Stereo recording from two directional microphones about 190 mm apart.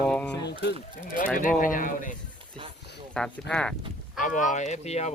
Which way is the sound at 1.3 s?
45° left (ahead or behind).